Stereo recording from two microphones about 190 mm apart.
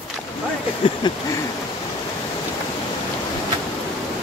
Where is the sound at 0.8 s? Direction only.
25° left (ahead or behind).